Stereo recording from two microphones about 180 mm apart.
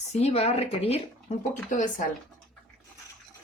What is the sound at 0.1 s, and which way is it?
A woman's voice, 35° left (ahead or behind).